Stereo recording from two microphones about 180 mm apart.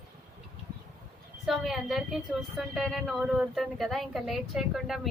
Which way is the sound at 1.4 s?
Centre (ahead or behind).